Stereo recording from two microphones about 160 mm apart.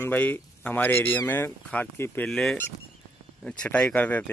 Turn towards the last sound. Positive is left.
turn(degrees=10)  # may be behind; listen again after turning